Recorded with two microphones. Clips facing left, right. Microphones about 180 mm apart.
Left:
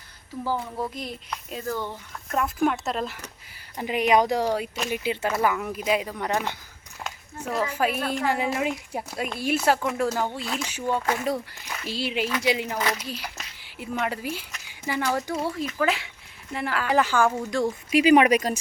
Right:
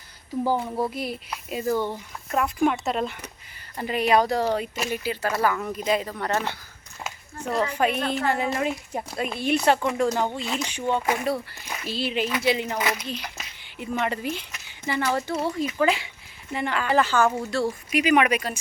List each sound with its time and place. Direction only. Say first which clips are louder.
0.4 s a sound: right 3 dB; 20° right (ahead or behind)
0.8 s speech: right 4 dB; 10° right (ahead or behind)
2.3 s speech: right 1 dB; centre (ahead or behind)
3.8 s speech: even; 15° left (ahead or behind)
4.9 s speech: left 2 dB; 20° left (ahead or behind)
7.0 s speech: right 1 dB; 5° left (ahead or behind)
11.0 s speech: right 1 dB; 15° right (ahead or behind)
11.9 s speech: right 1 dB; 10° left (ahead or behind)
12.6 s speech: right 1 dB; 10° right (ahead or behind)
13.0 s speech: right 1 dB; 10° left (ahead or behind)
14.7 s a sound: right 1 dB; 10° left (ahead or behind)
15.3 s speech: right 1 dB; 10° left (ahead or behind)
15.6 s speech: right 2 dB; centre (ahead or behind); by 17.7 s 15° left (ahead or behind)
17.9 s speech: left 4 dB; 30° left (ahead or behind)